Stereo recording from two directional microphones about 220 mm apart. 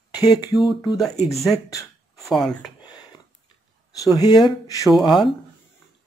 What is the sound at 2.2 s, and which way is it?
Speech, centre (ahead or behind).